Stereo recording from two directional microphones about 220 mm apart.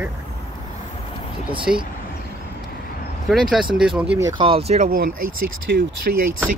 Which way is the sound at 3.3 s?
Centre (ahead or behind).